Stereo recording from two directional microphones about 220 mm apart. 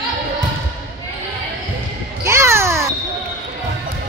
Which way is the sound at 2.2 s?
10° right (ahead or behind).